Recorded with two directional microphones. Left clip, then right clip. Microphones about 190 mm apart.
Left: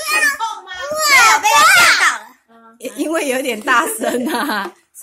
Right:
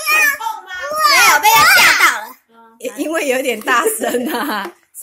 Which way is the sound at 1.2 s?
50° right (ahead or behind).